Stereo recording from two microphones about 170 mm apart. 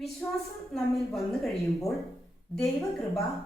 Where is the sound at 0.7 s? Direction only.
Centre (ahead or behind).